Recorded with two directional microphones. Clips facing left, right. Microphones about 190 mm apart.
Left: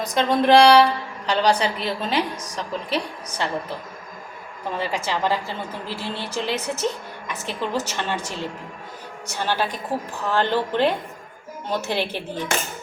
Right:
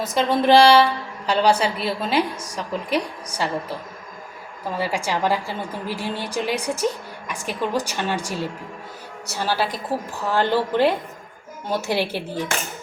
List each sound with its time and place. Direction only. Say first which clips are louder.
0.0 s a sound: even; 5° right (ahead or behind)
1.3 s a woman's voice: right 1 dB; 10° right (ahead or behind)
4.8 s a woman's voice: right 2 dB; 10° right (ahead or behind)
9.9 s a woman's voice: right 1 dB; 20° left (ahead or behind)
10.2 s a woman's voice: right 1 dB; 10° right (ahead or behind)